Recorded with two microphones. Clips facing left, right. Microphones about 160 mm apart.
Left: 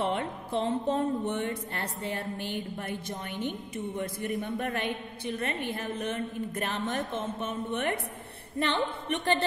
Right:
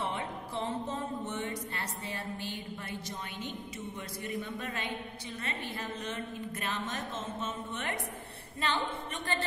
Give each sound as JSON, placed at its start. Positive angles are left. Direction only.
{"t": 0.0, "sound": "music", "side_deg": 60}